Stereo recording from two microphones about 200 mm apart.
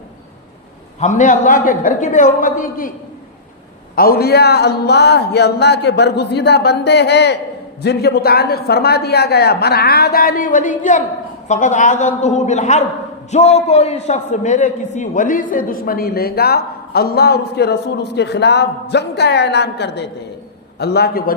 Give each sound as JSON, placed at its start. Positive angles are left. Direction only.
{"t": 0.9, "sound": "a woman's voice", "side_deg": 35}
{"t": 3.9, "sound": "a man's voice", "side_deg": 50}